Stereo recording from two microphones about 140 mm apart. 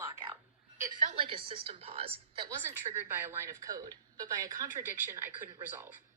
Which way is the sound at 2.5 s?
20° right (ahead or behind).